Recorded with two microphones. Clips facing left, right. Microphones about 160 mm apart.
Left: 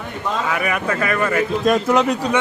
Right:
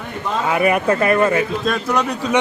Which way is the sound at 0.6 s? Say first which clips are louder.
Right 5 dB; 30° right (ahead or behind).